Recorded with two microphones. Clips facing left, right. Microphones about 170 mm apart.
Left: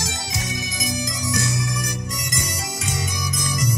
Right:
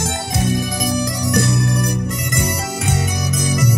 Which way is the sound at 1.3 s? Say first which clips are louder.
Right 8 dB; 60° right (ahead or behind).